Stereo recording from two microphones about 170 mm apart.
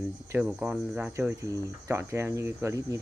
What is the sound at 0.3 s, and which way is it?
Speech, 5° right (ahead or behind).